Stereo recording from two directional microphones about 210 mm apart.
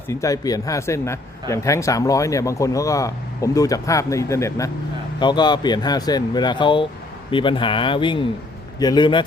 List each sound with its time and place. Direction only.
0.1 s speech: 15° left (ahead or behind)